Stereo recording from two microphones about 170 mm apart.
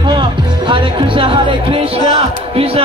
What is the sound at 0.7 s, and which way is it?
Speech, 30° right (ahead or behind).